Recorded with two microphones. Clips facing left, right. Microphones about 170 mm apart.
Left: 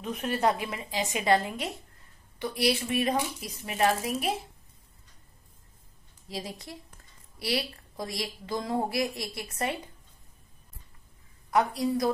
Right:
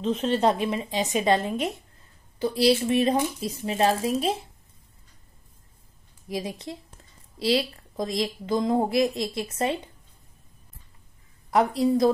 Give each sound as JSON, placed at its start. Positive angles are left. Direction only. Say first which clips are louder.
{"t": 0.0, "sound": "a woman's voice", "louder": "right 5 dB", "side_deg": -25}
{"t": 6.2, "sound": "a woman's voice", "louder": "right 6 dB", "side_deg": -20}
{"t": 11.7, "sound": "a woman's voice", "louder": "right 7 dB", "side_deg": -25}